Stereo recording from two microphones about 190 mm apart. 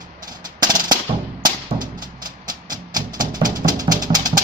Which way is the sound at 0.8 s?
20° right (ahead or behind).